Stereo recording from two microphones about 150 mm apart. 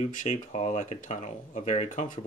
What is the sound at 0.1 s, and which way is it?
Speech, 55° left (ahead or behind).